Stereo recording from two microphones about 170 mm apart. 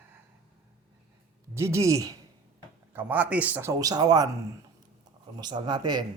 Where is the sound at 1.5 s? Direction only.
15° right (ahead or behind).